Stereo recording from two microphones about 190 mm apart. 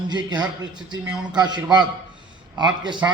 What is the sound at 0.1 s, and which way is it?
Speech, 20° right (ahead or behind).